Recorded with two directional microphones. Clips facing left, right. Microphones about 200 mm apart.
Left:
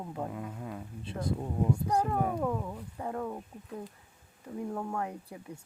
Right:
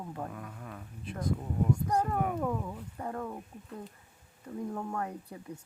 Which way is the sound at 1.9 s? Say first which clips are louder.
Left 1 dB; 10° left (ahead or behind).